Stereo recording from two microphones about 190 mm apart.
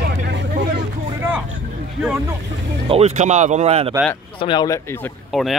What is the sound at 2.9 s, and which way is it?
Speech, 35° right (ahead or behind).